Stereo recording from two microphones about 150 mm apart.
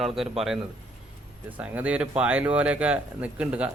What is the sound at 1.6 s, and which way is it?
Speech, 10° right (ahead or behind).